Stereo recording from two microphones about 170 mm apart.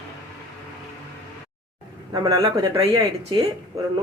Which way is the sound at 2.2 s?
35° right (ahead or behind).